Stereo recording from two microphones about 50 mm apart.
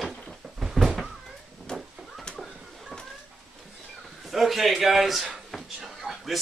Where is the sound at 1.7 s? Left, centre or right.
Centre.